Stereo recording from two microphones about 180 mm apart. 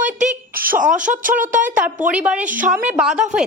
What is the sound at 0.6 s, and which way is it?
Speech, 50° right (ahead or behind).